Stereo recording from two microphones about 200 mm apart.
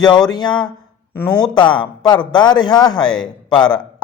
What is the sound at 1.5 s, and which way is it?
A man's voice, 25° left (ahead or behind).